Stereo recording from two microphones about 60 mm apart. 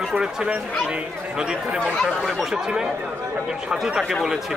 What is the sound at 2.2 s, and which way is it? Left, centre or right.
Speech, centre.